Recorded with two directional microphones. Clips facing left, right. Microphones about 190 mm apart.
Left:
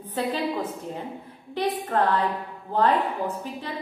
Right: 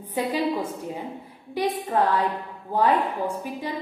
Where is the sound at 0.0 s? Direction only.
10° right (ahead or behind).